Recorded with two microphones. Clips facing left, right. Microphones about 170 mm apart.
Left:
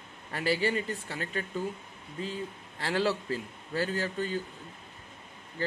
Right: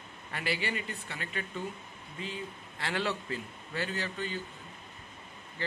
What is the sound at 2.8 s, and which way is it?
A man's voice, 35° left (ahead or behind).